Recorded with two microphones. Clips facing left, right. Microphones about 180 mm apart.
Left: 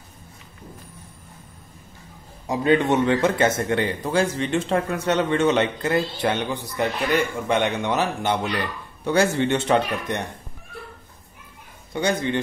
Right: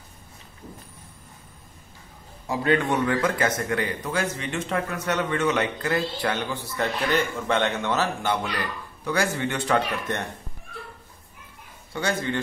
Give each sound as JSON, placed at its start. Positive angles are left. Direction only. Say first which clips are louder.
{"t": 2.4, "sound": "a man's voice", "louder": "left 4 dB", "side_deg": 20}
{"t": 11.9, "sound": "a man's voice", "louder": "left 4 dB", "side_deg": 20}